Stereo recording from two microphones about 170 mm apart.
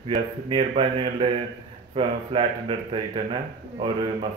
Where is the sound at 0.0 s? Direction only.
30° right (ahead or behind).